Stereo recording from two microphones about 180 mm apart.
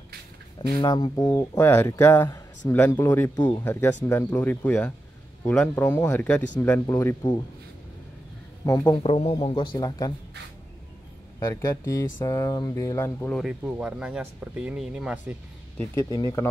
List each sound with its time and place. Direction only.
0.6 s speech: 25° left (ahead or behind)
8.6 s speech: 20° left (ahead or behind)
9.0 s speech: 35° left (ahead or behind)
11.3 s speech: 20° left (ahead or behind)
13.4 s speech: 5° right (ahead or behind)
15.8 s speech: 15° left (ahead or behind)